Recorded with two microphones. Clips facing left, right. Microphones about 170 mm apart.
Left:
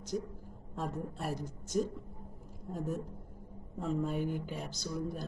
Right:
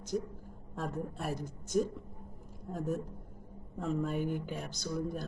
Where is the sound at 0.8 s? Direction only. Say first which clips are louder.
Right 1 dB; centre (ahead or behind).